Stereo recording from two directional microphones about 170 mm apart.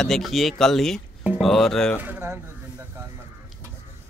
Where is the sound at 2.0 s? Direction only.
10° right (ahead or behind).